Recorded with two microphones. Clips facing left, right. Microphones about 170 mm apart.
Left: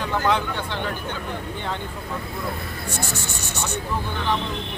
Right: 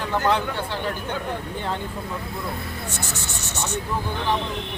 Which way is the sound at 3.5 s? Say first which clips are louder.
Right 1 dB; 10° left (ahead or behind).